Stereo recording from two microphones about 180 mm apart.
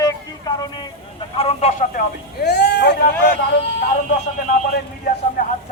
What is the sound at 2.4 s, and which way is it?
Speech, 65° left (ahead or behind).